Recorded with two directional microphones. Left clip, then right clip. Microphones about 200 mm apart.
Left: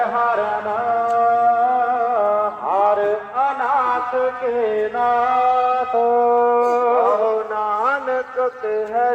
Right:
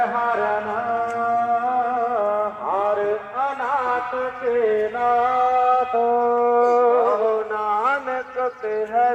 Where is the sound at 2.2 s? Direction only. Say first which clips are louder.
Left 4 dB; 40° right (ahead or behind).